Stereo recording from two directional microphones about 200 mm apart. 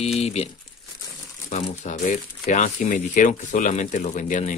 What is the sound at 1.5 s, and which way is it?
Speech, 35° left (ahead or behind).